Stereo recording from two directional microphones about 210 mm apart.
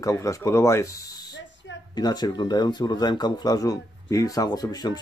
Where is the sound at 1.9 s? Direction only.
20° left (ahead or behind).